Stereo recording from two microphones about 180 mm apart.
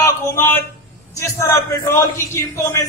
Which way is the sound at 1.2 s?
15° left (ahead or behind).